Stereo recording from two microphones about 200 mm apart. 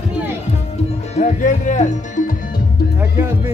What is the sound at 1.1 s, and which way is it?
Music, 35° left (ahead or behind).